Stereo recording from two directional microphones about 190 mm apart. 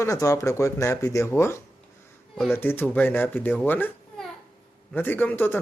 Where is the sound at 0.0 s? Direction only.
15° left (ahead or behind).